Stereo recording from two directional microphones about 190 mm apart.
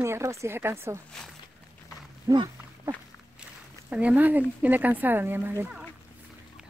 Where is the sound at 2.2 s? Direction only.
20° right (ahead or behind).